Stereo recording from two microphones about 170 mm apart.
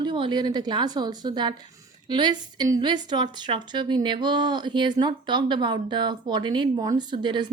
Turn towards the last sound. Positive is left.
turn(degrees=-25)  # may be behind; listen again after turning